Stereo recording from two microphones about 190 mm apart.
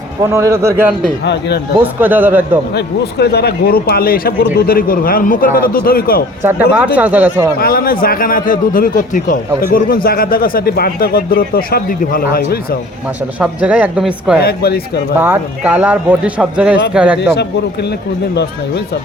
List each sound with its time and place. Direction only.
0.2 s a man's voice: 15° right (ahead or behind)
1.2 s speech: 65° left (ahead or behind)
2.0 s a man's voice: 10° right (ahead or behind)
2.7 s speech: 60° left (ahead or behind)
6.4 s a man's voice: 10° right (ahead or behind)
7.6 s speech: 50° left (ahead or behind)
13.4 s a man's voice: 5° right (ahead or behind)
14.4 s speech: 55° left (ahead or behind)
15.2 s a man's voice: 10° right (ahead or behind)
17.3 s speech: 60° left (ahead or behind)